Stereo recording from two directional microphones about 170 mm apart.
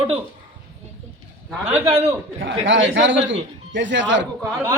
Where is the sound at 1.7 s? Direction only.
15° right (ahead or behind).